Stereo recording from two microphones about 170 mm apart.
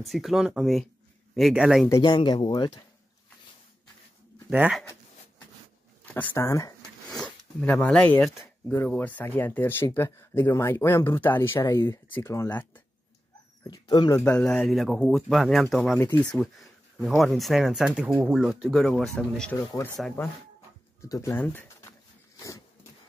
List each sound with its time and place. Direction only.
0.1 s speech: centre (ahead or behind)
1.9 s speech: 25° left (ahead or behind)
4.5 s speech: 5° right (ahead or behind)
6.1 s speech: 10° left (ahead or behind)
7.1 s zipper: 5° left (ahead or behind)
8.6 s speech: 10° left (ahead or behind)
13.7 s speech: 25° left (ahead or behind); by 16.0 s centre (ahead or behind)
17.0 s speech: centre (ahead or behind)
21.0 s speech: 15° left (ahead or behind)